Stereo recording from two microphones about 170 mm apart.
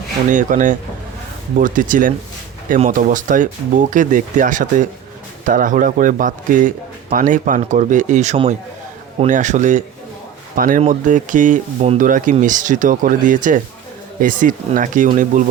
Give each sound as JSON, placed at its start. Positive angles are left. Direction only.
{"t": 0.3, "sound": "speech", "side_deg": -50}